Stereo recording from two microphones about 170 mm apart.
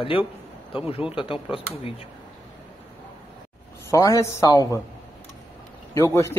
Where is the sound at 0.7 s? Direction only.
35° left (ahead or behind).